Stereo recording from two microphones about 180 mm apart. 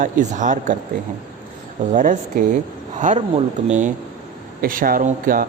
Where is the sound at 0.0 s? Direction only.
45° right (ahead or behind).